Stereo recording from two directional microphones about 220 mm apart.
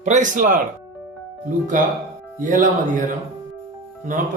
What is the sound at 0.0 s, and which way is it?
Speech, 35° right (ahead or behind).